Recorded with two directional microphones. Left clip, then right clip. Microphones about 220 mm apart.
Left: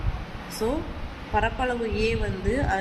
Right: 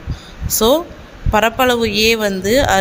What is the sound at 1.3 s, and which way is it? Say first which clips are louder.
A woman's voice: right 12 dB; 50° right (ahead or behind).